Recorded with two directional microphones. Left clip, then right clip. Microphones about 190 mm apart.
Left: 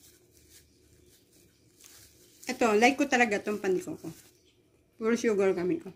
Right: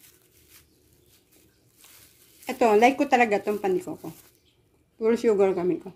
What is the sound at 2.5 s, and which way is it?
Speech, 10° right (ahead or behind).